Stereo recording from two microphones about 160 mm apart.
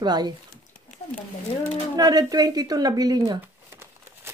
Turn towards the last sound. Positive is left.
turn(degrees=-15)  # may be behind; listen again after turning